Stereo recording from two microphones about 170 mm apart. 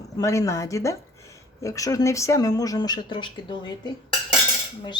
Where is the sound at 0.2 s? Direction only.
20° left (ahead or behind).